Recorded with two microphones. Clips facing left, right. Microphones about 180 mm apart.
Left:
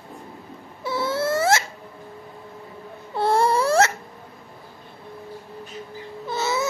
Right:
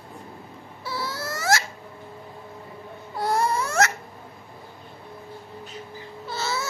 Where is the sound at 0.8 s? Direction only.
20° left (ahead or behind).